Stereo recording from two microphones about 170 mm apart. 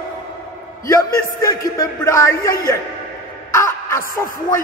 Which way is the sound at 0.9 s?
20° left (ahead or behind).